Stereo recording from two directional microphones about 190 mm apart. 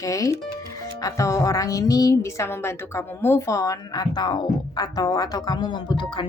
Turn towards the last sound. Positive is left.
turn(degrees=25)  # may be behind; listen again after turning